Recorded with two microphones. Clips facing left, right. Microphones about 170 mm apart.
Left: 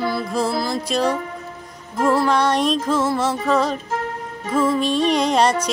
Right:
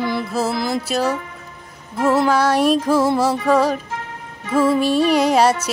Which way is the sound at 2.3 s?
5° right (ahead or behind).